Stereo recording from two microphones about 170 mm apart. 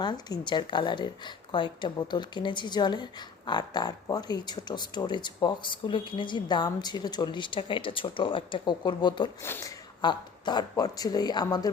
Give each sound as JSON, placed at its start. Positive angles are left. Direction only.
{"t": 0.0, "sound": "speech", "side_deg": 25}
{"t": 9.4, "sound": "speech", "side_deg": 15}
{"t": 10.0, "sound": "speech", "side_deg": 25}